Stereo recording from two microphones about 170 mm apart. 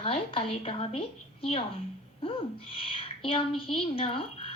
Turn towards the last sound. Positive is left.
turn(degrees=30)  # may be behind; listen again after turning